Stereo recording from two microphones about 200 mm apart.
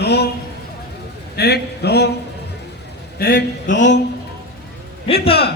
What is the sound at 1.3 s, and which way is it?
Speech, 55° left (ahead or behind).